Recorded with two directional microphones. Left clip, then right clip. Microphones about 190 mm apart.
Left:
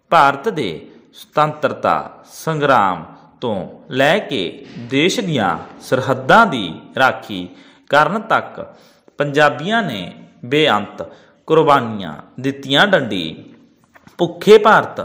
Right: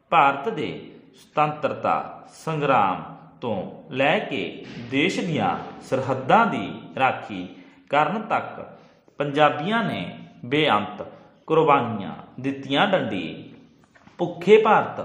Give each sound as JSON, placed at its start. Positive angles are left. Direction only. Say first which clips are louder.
{"t": 0.1, "sound": "a man's voice", "louder": "left 6 dB", "side_deg": 40}